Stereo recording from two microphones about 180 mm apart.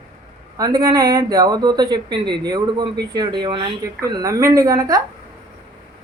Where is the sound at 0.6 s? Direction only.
25° right (ahead or behind).